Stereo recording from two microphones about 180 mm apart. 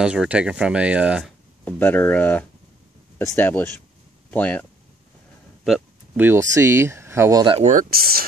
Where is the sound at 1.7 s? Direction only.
10° left (ahead or behind).